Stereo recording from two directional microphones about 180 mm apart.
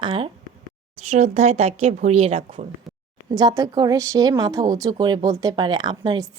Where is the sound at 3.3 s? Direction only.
20° right (ahead or behind).